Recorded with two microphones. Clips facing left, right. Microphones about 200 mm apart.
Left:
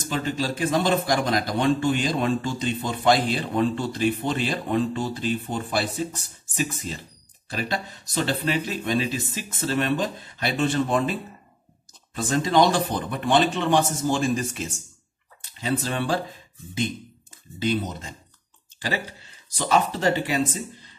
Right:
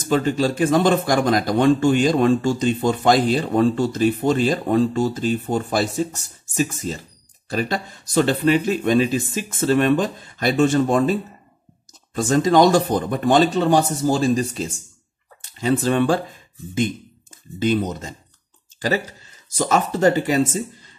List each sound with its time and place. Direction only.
0.1 s a man's voice: 45° right (ahead or behind)
15.5 s a man's voice: 45° right (ahead or behind)
17.6 s a man's voice: 50° right (ahead or behind)
19.5 s a man's voice: 45° right (ahead or behind)